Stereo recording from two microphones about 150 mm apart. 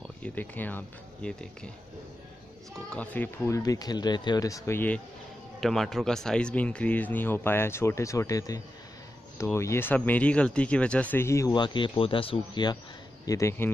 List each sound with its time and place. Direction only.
0.2 s speech: 10° left (ahead or behind)
2.9 s speech: 10° left (ahead or behind)
5.6 s speech: centre (ahead or behind); by 11.5 s 20° left (ahead or behind)
11.5 s speech: 30° left (ahead or behind)
13.2 s speech: 20° left (ahead or behind)